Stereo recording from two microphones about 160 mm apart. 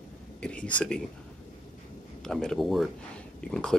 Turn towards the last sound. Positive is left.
turn(degrees=5)  # may be behind; listen again after turning